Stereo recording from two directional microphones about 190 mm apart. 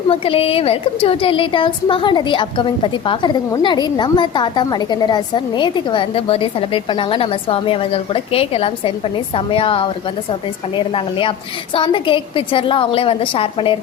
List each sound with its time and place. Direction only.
0.1 s a woman's voice: 30° left (ahead or behind)